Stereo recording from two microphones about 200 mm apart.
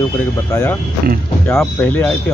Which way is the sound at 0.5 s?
15° left (ahead or behind).